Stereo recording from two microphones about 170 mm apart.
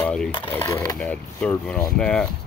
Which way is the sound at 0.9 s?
5° left (ahead or behind).